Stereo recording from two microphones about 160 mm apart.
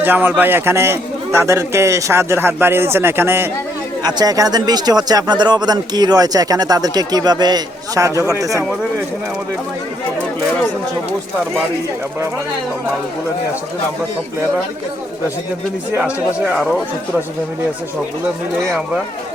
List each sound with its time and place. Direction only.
0.0 s a man's voice: 10° right (ahead or behind)
15.9 s a man's voice: 10° right (ahead or behind)